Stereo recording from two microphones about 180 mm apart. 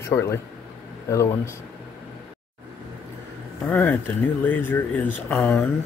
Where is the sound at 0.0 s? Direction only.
15° left (ahead or behind).